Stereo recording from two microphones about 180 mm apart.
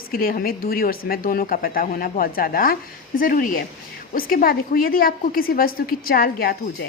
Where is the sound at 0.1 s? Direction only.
55° left (ahead or behind).